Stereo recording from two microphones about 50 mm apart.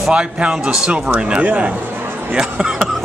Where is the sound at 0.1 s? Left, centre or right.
Right.